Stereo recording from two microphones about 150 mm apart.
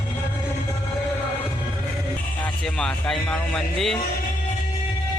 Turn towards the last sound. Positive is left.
turn(degrees=5)  # may be behind; listen again after turning